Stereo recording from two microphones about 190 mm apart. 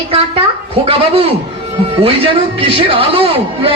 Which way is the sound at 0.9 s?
30° right (ahead or behind).